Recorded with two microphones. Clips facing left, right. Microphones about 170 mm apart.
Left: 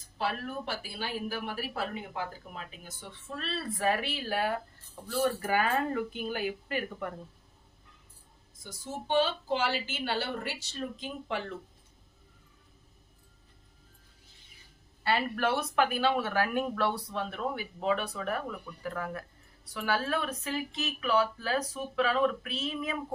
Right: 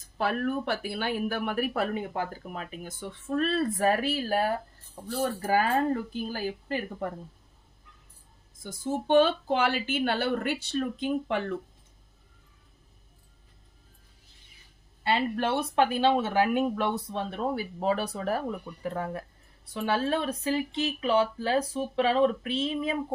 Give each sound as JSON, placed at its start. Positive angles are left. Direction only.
{"t": 0.2, "sound": "speech", "side_deg": -50}
{"t": 8.6, "sound": "a woman's voice", "side_deg": -50}
{"t": 15.0, "sound": "speech", "side_deg": -25}